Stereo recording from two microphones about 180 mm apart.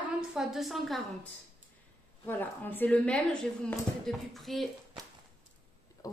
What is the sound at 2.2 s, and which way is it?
A woman's voice, 10° left (ahead or behind).